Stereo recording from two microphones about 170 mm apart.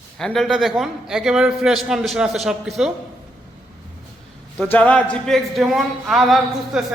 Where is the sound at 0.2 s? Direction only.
Centre (ahead or behind).